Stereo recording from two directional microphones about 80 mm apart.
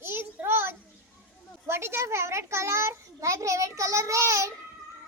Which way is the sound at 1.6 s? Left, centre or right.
Right.